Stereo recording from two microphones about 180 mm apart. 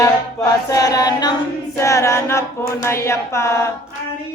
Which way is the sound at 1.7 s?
15° left (ahead or behind).